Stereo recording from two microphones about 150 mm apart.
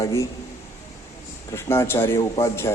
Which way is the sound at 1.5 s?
15° left (ahead or behind).